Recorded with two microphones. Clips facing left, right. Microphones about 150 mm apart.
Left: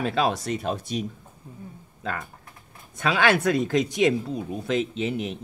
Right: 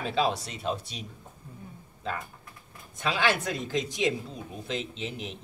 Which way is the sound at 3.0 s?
60° left (ahead or behind).